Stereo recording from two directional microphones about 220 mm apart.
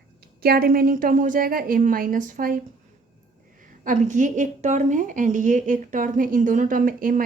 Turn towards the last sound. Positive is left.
turn(degrees=-40)  # may be behind; listen again after turning